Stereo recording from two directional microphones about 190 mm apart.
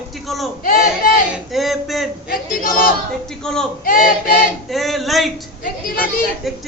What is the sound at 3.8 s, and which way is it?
Speech, 50° left (ahead or behind).